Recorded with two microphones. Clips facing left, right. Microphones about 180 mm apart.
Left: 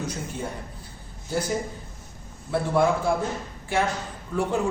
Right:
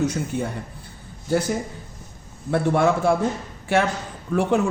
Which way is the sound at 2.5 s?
75° right (ahead or behind).